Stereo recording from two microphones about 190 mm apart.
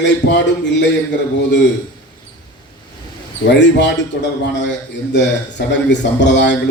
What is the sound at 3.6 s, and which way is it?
A man's voice, 65° left (ahead or behind).